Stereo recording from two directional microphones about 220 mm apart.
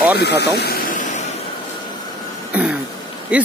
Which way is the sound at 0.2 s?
50° left (ahead or behind).